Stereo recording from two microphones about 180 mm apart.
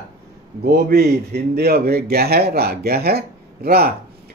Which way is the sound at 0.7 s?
60° right (ahead or behind).